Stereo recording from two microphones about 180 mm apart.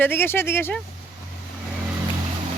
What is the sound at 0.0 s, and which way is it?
Speech, 10° left (ahead or behind).